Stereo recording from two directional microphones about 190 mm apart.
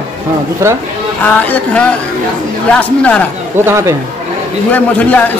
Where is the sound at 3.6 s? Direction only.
15° right (ahead or behind).